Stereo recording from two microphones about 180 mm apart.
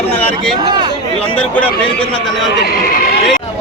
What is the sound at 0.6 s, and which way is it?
Speech, 25° right (ahead or behind).